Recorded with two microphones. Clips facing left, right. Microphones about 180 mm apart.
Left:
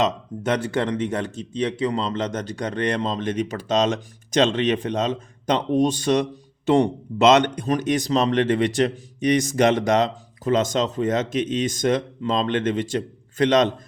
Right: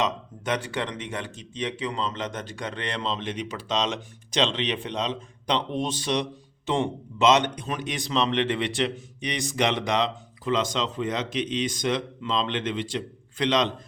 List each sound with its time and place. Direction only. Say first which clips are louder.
0.4 s a man's voice: left 6 dB; 40° left (ahead or behind)
7.3 s a man's voice: left 6 dB; 45° left (ahead or behind)